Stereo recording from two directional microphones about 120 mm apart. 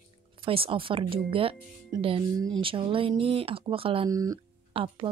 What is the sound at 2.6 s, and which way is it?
Speech, 45° right (ahead or behind).